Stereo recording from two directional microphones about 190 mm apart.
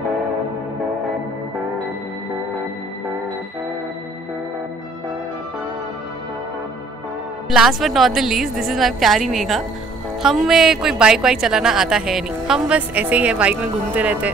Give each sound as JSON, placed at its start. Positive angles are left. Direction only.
{"t": 7.5, "sound": "a woman's voice", "side_deg": 0}